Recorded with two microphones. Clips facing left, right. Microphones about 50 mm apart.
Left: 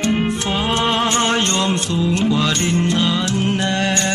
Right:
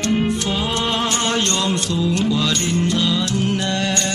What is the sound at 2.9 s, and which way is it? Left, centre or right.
Music, left.